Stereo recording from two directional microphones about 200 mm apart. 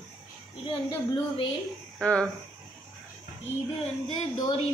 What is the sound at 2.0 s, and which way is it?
Speech, 5° left (ahead or behind).